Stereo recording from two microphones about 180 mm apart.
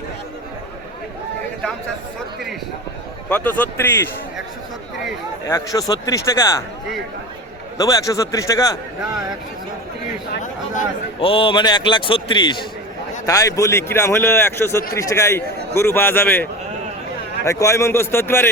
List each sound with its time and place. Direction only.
3.2 s a man's voice: 10° left (ahead or behind)
5.5 s a man's voice: 15° left (ahead or behind)
7.8 s a man's voice: 20° left (ahead or behind)
11.2 s a man's voice: 30° left (ahead or behind); by 18.4 s 15° left (ahead or behind)